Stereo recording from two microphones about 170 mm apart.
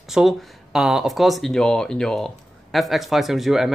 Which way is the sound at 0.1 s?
Centre (ahead or behind).